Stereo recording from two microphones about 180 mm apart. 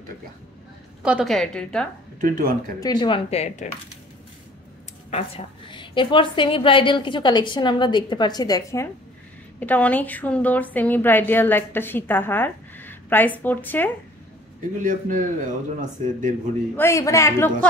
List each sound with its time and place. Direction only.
1.0 s a woman's voice: centre (ahead or behind)
2.2 s a man's voice: 50° right (ahead or behind)
2.8 s speech: 25° left (ahead or behind)
5.1 s a woman's voice: 30° left (ahead or behind); by 13.8 s 10° left (ahead or behind)
14.8 s a man's voice: 45° right (ahead or behind)
16.7 s a woman's voice: 15° left (ahead or behind)